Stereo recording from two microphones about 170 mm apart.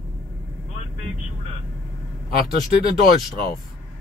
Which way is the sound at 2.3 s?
60° left (ahead or behind).